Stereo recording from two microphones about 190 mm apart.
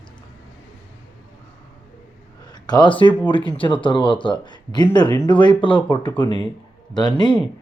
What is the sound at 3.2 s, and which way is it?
Speech, 25° left (ahead or behind).